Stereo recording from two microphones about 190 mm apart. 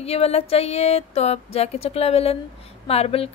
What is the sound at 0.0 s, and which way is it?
A woman's voice, 35° left (ahead or behind).